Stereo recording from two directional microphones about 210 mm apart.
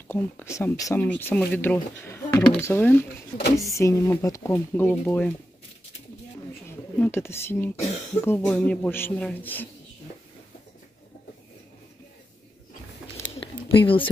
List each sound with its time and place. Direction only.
0.1 s speech: 10° left (ahead or behind)
7.0 s speech: 10° left (ahead or behind)
13.4 s a sound: 25° left (ahead or behind)